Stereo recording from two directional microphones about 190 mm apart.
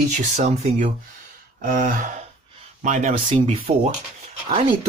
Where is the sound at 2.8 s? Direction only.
40° right (ahead or behind).